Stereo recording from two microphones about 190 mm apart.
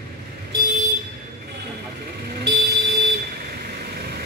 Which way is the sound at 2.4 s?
60° right (ahead or behind).